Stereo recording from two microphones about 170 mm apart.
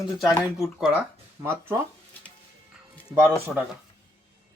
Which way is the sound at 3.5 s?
Centre (ahead or behind).